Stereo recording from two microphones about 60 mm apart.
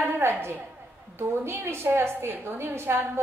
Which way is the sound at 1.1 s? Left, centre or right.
Right.